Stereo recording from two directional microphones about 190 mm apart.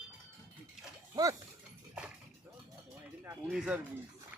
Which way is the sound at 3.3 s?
5° right (ahead or behind).